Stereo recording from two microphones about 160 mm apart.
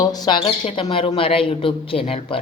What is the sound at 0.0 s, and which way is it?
Speech, 25° left (ahead or behind).